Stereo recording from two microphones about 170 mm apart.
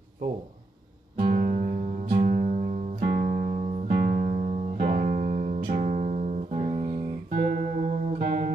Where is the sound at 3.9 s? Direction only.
60° right (ahead or behind); by 4.8 s 40° right (ahead or behind).